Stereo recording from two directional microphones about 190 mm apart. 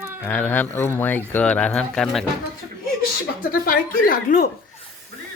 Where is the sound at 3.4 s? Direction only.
45° left (ahead or behind).